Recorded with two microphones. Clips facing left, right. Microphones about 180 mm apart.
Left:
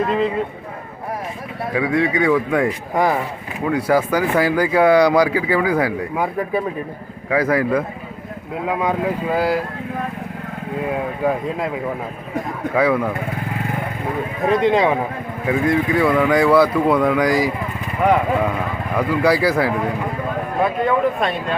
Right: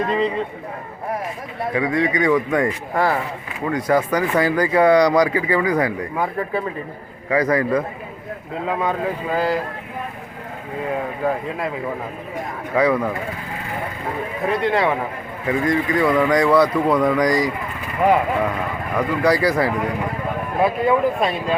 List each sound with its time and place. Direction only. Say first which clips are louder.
0.1 s speech: left 1 dB; 5° left (ahead or behind)
1.7 s speech: left 2 dB; 5° left (ahead or behind)
2.9 s speech: left 3 dB; 15° left (ahead or behind)
10.8 s speech: left 1 dB; 10° left (ahead or behind)
12.7 s speech: even; 5° left (ahead or behind)
14.5 s speech: left 4 dB; 20° left (ahead or behind)
15.4 s speech: left 2 dB; 5° left (ahead or behind)
18.9 s speech: left 1 dB; 5° left (ahead or behind)